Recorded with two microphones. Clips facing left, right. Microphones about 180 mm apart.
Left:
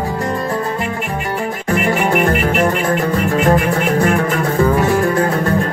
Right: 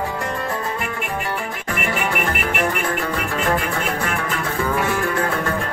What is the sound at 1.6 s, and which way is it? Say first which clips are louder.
Music: left 8 dB; 45° left (ahead or behind).